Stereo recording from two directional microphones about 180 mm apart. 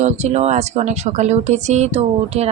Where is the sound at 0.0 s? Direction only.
40° right (ahead or behind).